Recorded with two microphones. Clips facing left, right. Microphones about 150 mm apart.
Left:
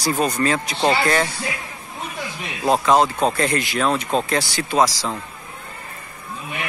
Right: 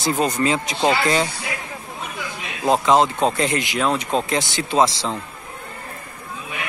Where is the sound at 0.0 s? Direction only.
20° right (ahead or behind).